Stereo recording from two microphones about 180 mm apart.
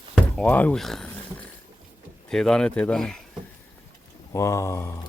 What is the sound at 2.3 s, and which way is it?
Speech, 5° left (ahead or behind).